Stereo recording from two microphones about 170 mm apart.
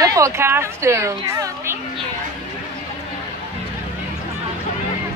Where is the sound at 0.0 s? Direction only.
20° right (ahead or behind).